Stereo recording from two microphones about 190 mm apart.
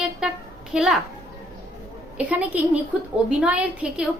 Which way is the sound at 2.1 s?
10° right (ahead or behind).